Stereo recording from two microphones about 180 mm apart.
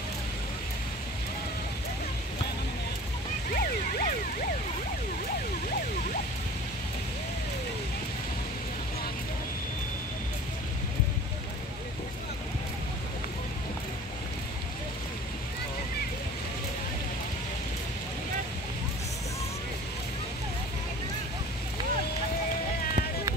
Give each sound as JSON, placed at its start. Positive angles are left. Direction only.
{"t": 3.5, "sound": "emergency vehicle", "side_deg": 55}